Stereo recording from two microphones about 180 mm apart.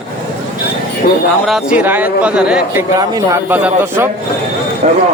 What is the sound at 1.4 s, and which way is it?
Speech, 5° right (ahead or behind).